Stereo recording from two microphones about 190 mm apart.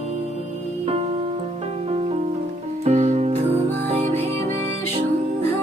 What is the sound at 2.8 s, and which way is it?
Music, 35° right (ahead or behind).